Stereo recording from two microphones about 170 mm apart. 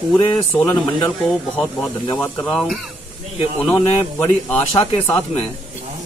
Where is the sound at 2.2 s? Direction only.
10° left (ahead or behind).